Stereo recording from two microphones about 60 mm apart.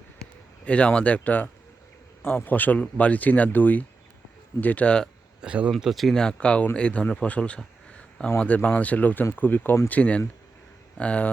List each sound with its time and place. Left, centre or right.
0.2 s speech: left
5.4 s speech: right
5.8 s speech: centre
6.1 s a man's voice: centre; by 9.7 s left
9.9 s speech: left